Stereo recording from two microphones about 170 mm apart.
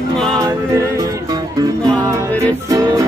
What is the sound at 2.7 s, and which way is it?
Music, 20° right (ahead or behind).